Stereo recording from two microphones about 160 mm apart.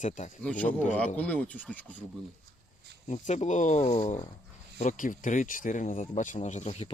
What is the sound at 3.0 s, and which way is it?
Speech, 45° left (ahead or behind).